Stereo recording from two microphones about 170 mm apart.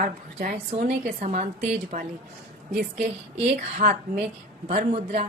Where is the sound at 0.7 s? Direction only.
40° right (ahead or behind).